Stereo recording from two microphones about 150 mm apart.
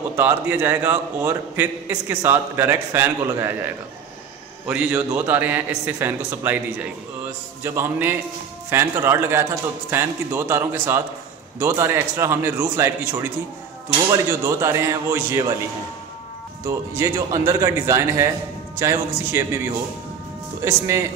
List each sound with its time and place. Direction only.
0.2 s a man's voice: 15° right (ahead or behind)
16.6 s a man's voice: 20° right (ahead or behind)
20.6 s speech: 20° right (ahead or behind)